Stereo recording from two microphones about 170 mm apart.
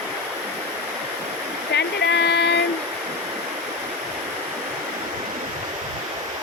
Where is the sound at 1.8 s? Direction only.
90° left.